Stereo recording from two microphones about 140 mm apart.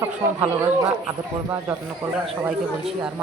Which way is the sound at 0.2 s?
15° right (ahead or behind).